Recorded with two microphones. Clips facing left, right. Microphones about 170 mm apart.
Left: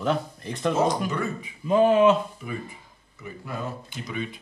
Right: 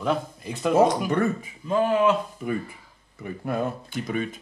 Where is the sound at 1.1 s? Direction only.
55° right (ahead or behind).